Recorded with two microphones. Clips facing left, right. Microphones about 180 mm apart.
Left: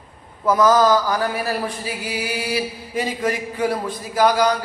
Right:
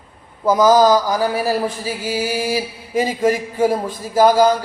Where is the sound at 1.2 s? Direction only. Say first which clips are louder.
Right 4 dB; 35° right (ahead or behind).